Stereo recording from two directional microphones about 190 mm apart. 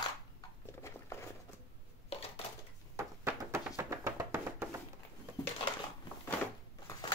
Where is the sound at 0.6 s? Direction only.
15° left (ahead or behind).